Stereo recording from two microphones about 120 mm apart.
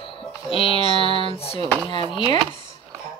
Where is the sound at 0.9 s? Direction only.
45° right (ahead or behind).